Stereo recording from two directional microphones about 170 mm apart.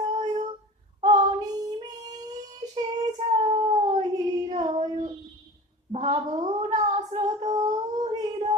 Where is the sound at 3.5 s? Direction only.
25° right (ahead or behind).